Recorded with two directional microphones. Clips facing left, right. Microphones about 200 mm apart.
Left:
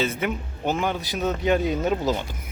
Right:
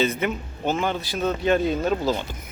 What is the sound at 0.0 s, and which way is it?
Speech, 5° left (ahead or behind).